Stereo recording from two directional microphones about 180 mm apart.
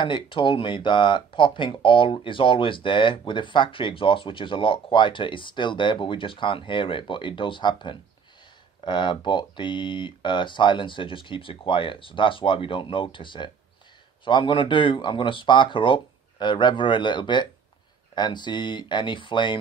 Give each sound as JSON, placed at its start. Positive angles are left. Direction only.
{"t": 0.0, "sound": "speech", "side_deg": 30}